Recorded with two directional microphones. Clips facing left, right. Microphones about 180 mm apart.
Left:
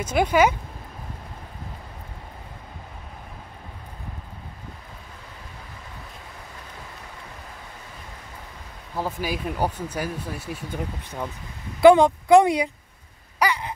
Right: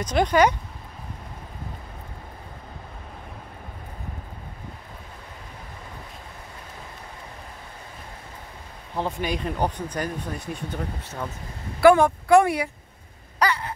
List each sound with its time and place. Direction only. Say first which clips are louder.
0.0 s speech: even; 10° left (ahead or behind)
8.9 s speech: right 1 dB; 5° left (ahead or behind)
13.4 s a sound: even; 15° left (ahead or behind)